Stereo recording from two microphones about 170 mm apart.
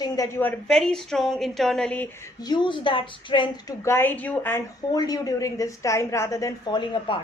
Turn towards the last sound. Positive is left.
turn(degrees=30)  # may be behind; listen again after turning